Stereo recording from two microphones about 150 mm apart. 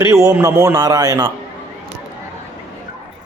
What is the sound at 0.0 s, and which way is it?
A man's voice, 20° right (ahead or behind).